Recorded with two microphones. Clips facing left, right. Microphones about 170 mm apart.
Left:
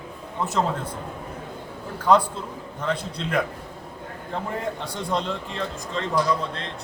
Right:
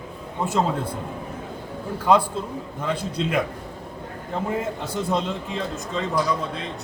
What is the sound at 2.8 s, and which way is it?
Speech, 10° right (ahead or behind).